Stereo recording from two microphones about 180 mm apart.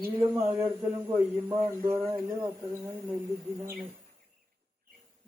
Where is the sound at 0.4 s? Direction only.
15° right (ahead or behind).